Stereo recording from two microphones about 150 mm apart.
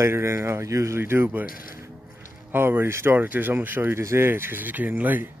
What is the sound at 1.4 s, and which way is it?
Speech, 70° left (ahead or behind).